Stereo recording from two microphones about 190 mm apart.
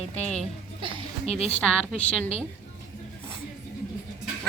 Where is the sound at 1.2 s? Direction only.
35° left (ahead or behind).